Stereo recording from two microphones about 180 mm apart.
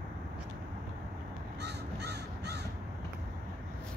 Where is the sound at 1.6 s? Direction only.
65° right (ahead or behind).